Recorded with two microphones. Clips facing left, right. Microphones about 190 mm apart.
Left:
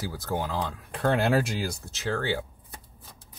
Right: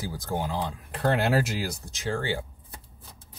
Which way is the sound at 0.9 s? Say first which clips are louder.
Left 1 dB; centre (ahead or behind).